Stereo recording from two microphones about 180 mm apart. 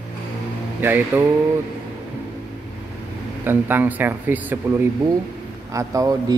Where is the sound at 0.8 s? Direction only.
10° right (ahead or behind).